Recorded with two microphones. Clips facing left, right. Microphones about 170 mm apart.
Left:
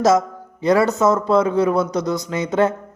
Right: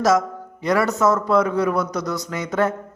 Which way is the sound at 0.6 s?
25° left (ahead or behind).